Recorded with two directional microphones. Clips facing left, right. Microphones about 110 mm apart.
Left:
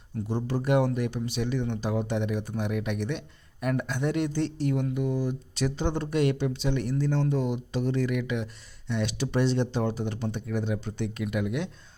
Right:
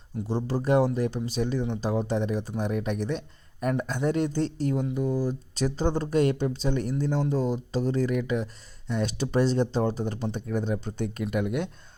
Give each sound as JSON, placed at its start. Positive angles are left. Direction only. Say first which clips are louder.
{"t": 0.3, "sound": "speech", "louder": "right 2 dB", "side_deg": -35}